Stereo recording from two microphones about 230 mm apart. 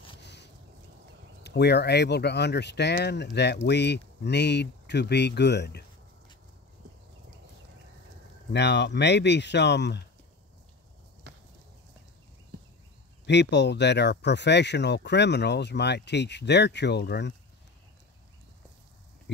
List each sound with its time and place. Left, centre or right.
0.2 s a sound: left
1.4 s speech: left
8.5 s speech: left
13.2 s speech: left